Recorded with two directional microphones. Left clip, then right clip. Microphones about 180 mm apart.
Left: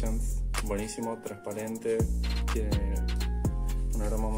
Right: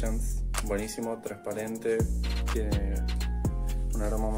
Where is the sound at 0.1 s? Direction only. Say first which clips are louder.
Right 1 dB; centre (ahead or behind).